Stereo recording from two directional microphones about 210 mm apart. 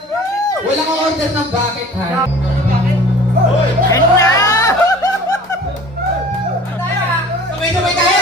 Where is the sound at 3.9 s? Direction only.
15° left (ahead or behind).